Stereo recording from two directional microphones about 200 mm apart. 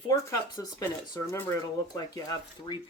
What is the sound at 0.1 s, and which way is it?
Speech, 15° left (ahead or behind).